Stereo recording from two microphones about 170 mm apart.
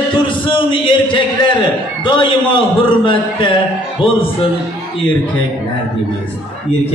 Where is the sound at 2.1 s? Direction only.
30° left (ahead or behind).